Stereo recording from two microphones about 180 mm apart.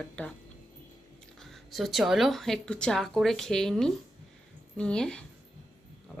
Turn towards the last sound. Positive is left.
turn(degrees=5)  # may be behind; listen again after turning